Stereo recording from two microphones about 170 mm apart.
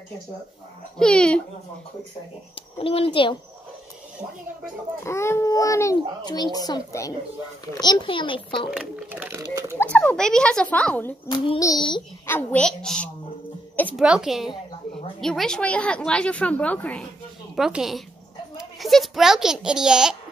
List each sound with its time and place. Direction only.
0.9 s a woman's voice: 5° left (ahead or behind)
2.5 s a child's voice: 35° left (ahead or behind)
5.0 s a child's voice: 15° left (ahead or behind)
8.7 s speech: 5° right (ahead or behind)
9.8 s speech: 10° left (ahead or behind)
11.2 s a child's voice: 30° left (ahead or behind)
12.3 s a woman's voice: 10° left (ahead or behind)
17.6 s a woman's voice: 5° right (ahead or behind)